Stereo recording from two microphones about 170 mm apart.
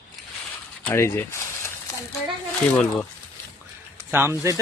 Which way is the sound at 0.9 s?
15° left (ahead or behind).